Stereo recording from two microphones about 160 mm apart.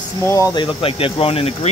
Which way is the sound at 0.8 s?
35° left (ahead or behind).